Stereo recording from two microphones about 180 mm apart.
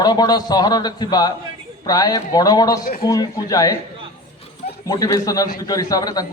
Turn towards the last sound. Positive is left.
turn(degrees=20)  # may be behind; listen again after turning